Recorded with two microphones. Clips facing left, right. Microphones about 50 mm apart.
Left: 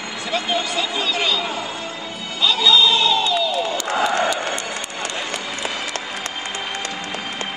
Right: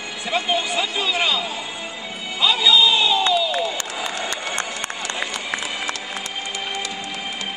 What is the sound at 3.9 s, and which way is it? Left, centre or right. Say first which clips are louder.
Crowd: left 8 dB; left.